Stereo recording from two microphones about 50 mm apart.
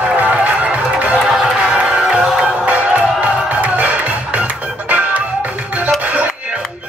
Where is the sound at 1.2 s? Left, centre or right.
Centre.